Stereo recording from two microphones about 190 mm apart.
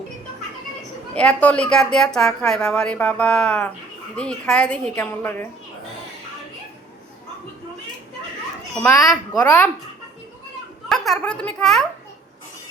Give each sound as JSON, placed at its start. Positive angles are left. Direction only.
{"t": 1.1, "sound": "a woman's voice", "side_deg": 5}
{"t": 8.8, "sound": "a woman's voice", "side_deg": 15}
{"t": 10.8, "sound": "speech", "side_deg": 0}